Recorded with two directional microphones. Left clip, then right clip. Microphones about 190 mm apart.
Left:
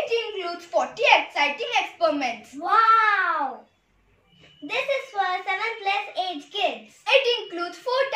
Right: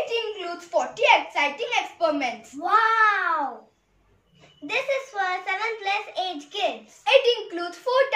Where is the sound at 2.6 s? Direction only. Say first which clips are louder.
Left 1 dB; 10° left (ahead or behind).